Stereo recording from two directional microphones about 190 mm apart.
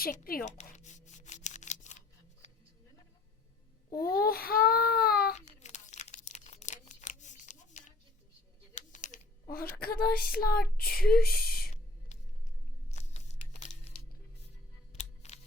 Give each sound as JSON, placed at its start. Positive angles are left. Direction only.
{"t": 0.0, "sound": "child singing", "side_deg": 50}
{"t": 0.5, "sound": "a sound", "side_deg": 35}
{"t": 3.8, "sound": "a child's voice", "side_deg": 20}
{"t": 4.2, "sound": "child singing", "side_deg": 50}
{"t": 5.3, "sound": "crumpling", "side_deg": 35}
{"t": 8.7, "sound": "speech", "side_deg": 40}
{"t": 10.8, "sound": "speech", "side_deg": 0}
{"t": 11.1, "sound": "speech", "side_deg": 50}
{"t": 12.1, "sound": "music", "side_deg": 35}
{"t": 14.9, "sound": "music", "side_deg": 35}